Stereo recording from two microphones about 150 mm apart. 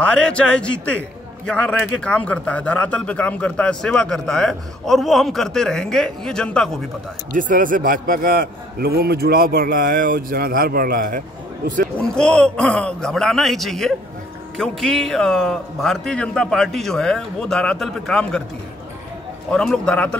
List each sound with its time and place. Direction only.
0.0 s a man's voice: 5° left (ahead or behind)
7.3 s a man's voice: 65° right (ahead or behind)
12.0 s a man's voice: 5° left (ahead or behind)
19.5 s a man's voice: 5° left (ahead or behind)